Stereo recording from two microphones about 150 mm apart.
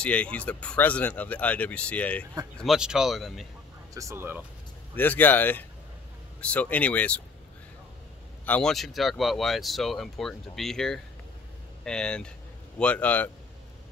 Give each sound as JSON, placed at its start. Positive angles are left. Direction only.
{"t": 0.0, "sound": "speech", "side_deg": 10}
{"t": 2.6, "sound": "speech", "side_deg": -5}
{"t": 3.9, "sound": "speech", "side_deg": -20}
{"t": 4.9, "sound": "speech", "side_deg": 10}
{"t": 8.5, "sound": "speech", "side_deg": 5}